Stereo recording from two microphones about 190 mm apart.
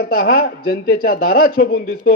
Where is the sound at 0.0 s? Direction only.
55° left (ahead or behind).